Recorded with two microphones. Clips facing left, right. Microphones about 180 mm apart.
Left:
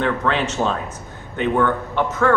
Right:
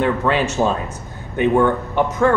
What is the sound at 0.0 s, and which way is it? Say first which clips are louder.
Speech: right 3 dB; 10° right (ahead or behind).